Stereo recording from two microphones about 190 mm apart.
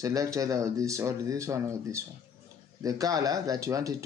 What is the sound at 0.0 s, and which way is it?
Speech, 15° right (ahead or behind).